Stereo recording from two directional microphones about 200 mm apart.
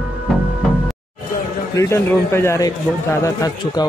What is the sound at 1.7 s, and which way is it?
A man's voice, 15° left (ahead or behind).